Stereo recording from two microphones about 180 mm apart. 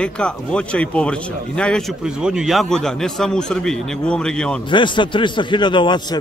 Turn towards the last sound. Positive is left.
turn(degrees=25)  # may be behind; listen again after turning